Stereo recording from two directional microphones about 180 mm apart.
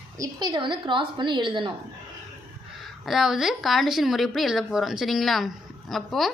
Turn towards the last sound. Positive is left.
turn(degrees=0)  # may be behind; listen again after turning